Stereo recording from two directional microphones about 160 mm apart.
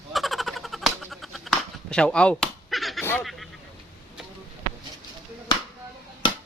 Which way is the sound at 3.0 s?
10° left (ahead or behind).